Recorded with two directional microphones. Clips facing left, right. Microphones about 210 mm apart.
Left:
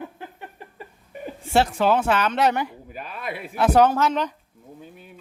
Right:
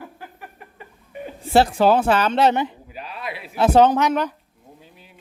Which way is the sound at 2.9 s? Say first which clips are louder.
Even; 50° left (ahead or behind).